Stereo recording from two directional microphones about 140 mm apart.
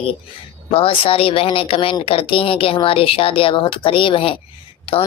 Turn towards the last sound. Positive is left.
turn(degrees=40)  # may be behind; listen again after turning